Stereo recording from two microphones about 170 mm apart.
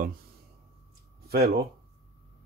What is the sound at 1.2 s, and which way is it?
Speech, 65° right (ahead or behind).